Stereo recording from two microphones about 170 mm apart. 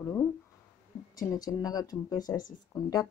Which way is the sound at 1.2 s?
20° left (ahead or behind).